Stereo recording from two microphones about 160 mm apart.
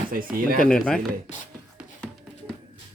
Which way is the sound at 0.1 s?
60° right (ahead or behind).